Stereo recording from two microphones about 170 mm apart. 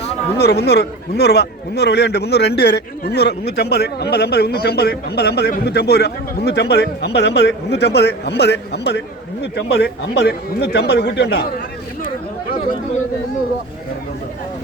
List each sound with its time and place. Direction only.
0.3 s a man's voice: 70° left (ahead or behind)